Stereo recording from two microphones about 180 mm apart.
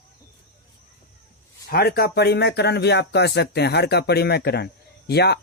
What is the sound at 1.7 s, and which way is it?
Speech, 55° left (ahead or behind).